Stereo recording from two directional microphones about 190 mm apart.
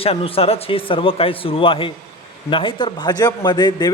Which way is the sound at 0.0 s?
30° left (ahead or behind).